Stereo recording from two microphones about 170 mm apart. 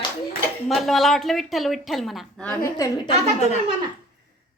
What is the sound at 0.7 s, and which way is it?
A woman's voice, centre (ahead or behind).